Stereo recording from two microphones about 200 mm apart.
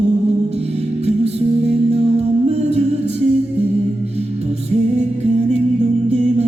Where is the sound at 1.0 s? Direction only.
30° right (ahead or behind).